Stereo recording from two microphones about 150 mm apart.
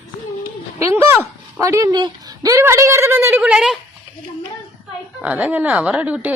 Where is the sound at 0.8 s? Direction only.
20° right (ahead or behind).